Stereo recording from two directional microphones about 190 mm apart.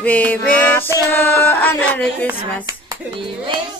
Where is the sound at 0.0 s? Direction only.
10° left (ahead or behind).